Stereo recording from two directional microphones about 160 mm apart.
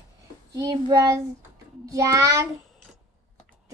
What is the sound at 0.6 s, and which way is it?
Child singing, 20° right (ahead or behind).